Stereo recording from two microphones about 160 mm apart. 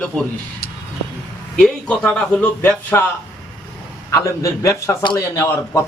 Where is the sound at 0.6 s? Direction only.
70° left (ahead or behind).